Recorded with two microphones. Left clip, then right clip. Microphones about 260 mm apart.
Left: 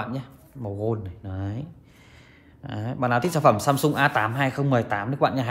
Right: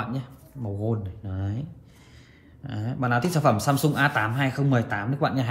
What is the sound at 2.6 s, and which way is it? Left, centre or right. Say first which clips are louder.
Speech: left 2 dB; left.